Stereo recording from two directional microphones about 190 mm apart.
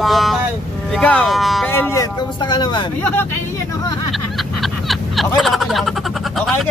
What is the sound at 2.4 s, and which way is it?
Speech, 25° left (ahead or behind).